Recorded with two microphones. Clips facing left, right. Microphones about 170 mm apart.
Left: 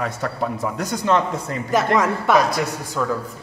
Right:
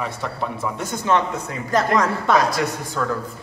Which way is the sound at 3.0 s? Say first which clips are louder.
Left 1 dB; 15° left (ahead or behind).